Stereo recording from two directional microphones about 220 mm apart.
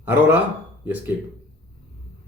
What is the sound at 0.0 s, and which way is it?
Speech, 10° right (ahead or behind).